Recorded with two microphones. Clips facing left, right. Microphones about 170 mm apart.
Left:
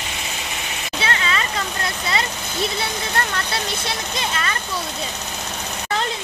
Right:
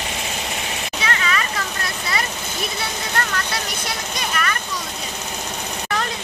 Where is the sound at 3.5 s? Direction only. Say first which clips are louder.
Left 1 dB; 25° left (ahead or behind).